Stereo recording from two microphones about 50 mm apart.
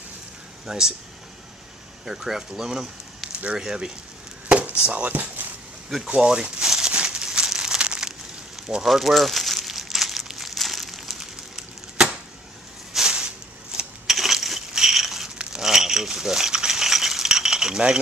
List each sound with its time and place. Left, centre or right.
0.7 s speech: centre
2.0 s speech: centre; by 5.5 s right
6.0 s speech: centre
6.9 s crumpling: right
8.8 s crumpling: centre
12.0 s a sound: centre
14.0 s crushing: centre
15.5 s a sound: centre